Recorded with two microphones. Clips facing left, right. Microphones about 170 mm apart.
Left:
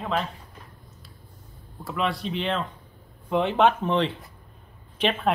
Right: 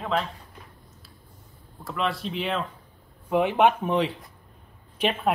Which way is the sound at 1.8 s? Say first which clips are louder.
Left 1 dB; centre (ahead or behind).